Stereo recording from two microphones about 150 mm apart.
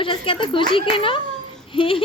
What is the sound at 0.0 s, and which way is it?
A child's voice, 35° left (ahead or behind).